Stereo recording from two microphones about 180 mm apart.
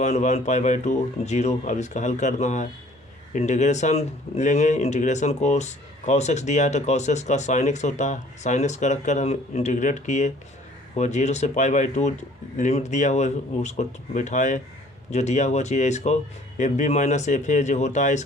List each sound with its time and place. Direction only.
0.0 s speech: 40° left (ahead or behind)